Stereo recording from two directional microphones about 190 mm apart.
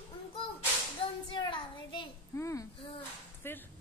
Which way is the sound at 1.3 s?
25° left (ahead or behind).